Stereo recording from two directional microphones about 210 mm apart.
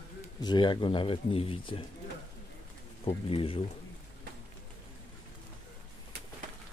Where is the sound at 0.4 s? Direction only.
20° left (ahead or behind).